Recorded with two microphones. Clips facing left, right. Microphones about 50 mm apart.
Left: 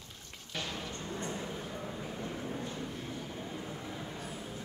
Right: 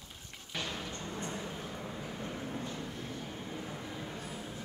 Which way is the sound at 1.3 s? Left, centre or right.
Centre.